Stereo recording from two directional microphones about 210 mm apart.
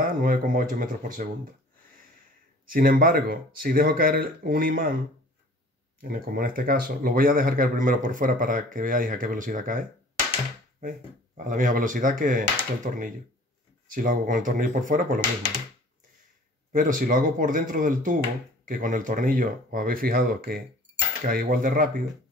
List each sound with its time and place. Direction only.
0.2 s speech: 40° right (ahead or behind)
2.7 s speech: 40° right (ahead or behind)
5.9 s speech: 45° right (ahead or behind)
16.7 s speech: 40° right (ahead or behind)